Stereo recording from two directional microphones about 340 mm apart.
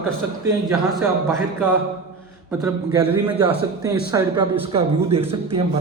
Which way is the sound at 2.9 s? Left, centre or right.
Centre.